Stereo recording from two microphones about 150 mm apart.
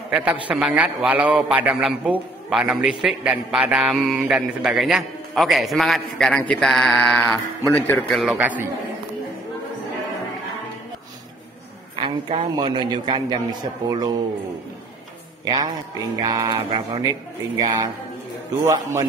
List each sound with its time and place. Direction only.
0.1 s a man's voice: 10° right (ahead or behind)
8.4 s a man's voice: 10° right (ahead or behind)
12.0 s a man's voice: 35° right (ahead or behind)
15.4 s a man's voice: 25° right (ahead or behind)
16.2 s music: 25° right (ahead or behind)
17.6 s music: 25° right (ahead or behind)